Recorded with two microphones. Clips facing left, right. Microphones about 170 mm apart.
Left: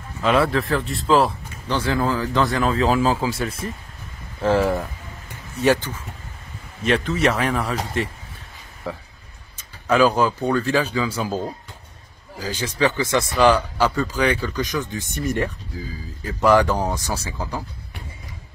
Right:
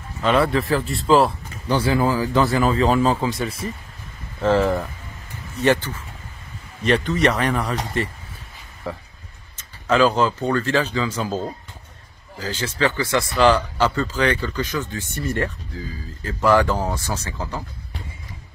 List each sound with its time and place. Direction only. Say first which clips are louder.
0.2 s speech: even; centre (ahead or behind)
6.8 s speech: right 1 dB; centre (ahead or behind)
9.6 s speech: even; 10° left (ahead or behind)